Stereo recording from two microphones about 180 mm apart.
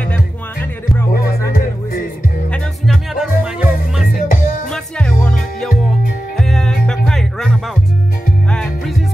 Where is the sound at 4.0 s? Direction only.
50° left (ahead or behind).